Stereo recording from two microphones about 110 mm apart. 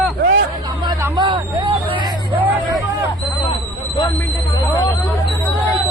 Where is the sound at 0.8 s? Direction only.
45° right (ahead or behind).